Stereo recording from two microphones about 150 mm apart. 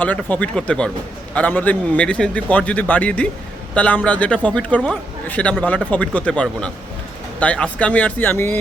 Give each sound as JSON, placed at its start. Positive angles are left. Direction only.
{"t": 0.0, "sound": "a man's voice", "side_deg": 10}